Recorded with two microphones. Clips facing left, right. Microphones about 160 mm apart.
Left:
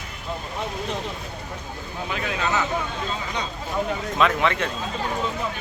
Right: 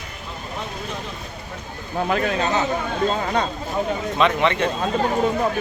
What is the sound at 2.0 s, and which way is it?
Speech, 50° right (ahead or behind).